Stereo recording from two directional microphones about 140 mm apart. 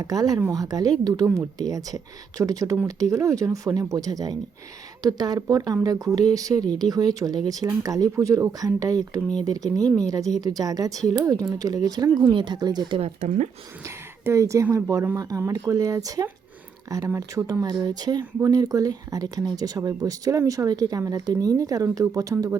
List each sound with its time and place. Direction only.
0.0 s speech: 25° right (ahead or behind)
13.0 s speech: 55° right (ahead or behind)
13.8 s speech: 20° right (ahead or behind)